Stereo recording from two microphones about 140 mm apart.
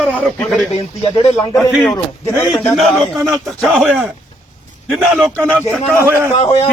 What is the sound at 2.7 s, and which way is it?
Speech, centre (ahead or behind).